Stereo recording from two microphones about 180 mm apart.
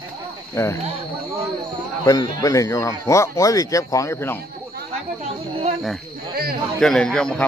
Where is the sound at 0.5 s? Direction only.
15° left (ahead or behind).